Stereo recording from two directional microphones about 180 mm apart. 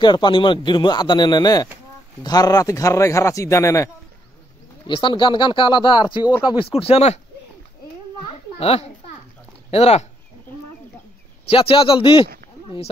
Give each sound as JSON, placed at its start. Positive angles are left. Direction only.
{"t": 0.0, "sound": "a man's voice", "side_deg": 25}
{"t": 4.8, "sound": "a man's voice", "side_deg": 25}
{"t": 8.3, "sound": "a child's voice", "side_deg": 35}
{"t": 11.4, "sound": "a man's voice", "side_deg": 30}